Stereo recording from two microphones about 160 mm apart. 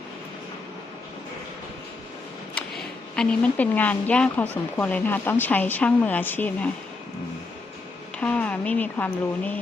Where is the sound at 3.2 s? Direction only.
5° left (ahead or behind).